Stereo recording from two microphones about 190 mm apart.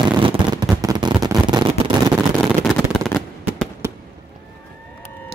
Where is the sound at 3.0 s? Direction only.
5° left (ahead or behind).